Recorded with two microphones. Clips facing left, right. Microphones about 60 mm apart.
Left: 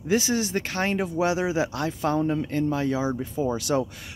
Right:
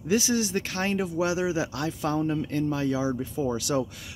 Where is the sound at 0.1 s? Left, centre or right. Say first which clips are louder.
Left 1 dB; left.